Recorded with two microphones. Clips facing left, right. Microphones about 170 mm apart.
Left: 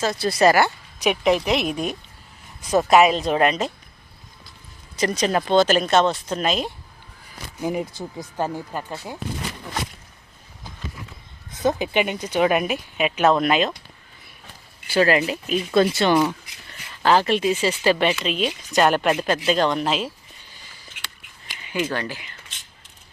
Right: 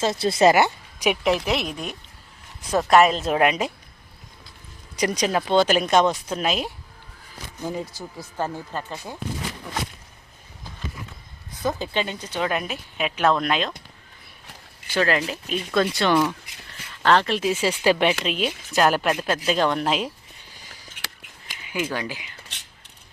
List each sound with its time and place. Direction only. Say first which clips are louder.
0.0 s speech: even; 25° right (ahead or behind)
1.1 s speech: left 4 dB; centre (ahead or behind)
1.6 s speech: left 6 dB; 15° left (ahead or behind)
2.9 s speech: even; centre (ahead or behind)
4.9 s speech: left 1 dB; 10° right (ahead or behind)
7.6 s speech: left 4 dB; 15° left (ahead or behind)
11.5 s speech: left 4 dB; 20° left (ahead or behind)
15.0 s speech: left 3 dB; 5° left (ahead or behind)
15.7 s speech: left 4 dB; 25° left (ahead or behind)
17.0 s speech: left 2 dB; 5° left (ahead or behind)
21.6 s speech: left 2 dB; 10° right (ahead or behind)